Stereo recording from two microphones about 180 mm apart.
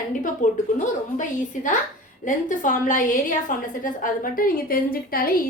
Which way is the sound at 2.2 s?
45° left (ahead or behind).